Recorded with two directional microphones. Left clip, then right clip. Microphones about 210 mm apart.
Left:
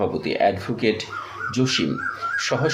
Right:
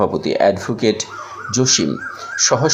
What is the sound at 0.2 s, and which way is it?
Speech, 20° right (ahead or behind).